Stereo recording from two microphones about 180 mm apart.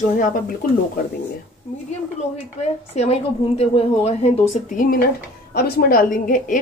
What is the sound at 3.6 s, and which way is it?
A woman's voice, 35° left (ahead or behind).